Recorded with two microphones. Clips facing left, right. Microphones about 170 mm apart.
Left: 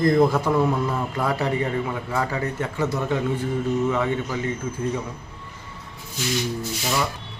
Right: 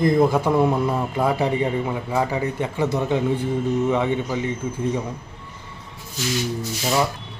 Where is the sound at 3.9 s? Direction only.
20° right (ahead or behind).